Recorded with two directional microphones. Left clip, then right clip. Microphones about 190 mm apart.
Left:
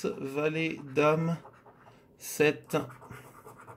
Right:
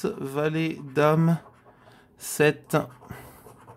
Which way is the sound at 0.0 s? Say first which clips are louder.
Right 4 dB; 40° right (ahead or behind).